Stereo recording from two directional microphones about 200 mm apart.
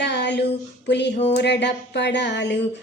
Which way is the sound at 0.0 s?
60° left (ahead or behind).